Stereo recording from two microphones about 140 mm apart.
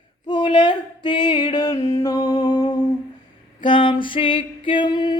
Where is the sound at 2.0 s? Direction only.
25° left (ahead or behind).